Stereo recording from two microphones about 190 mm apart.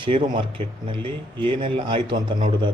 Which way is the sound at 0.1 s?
35° right (ahead or behind).